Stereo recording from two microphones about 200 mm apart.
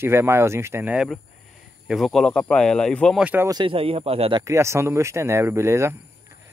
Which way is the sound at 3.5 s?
25° right (ahead or behind).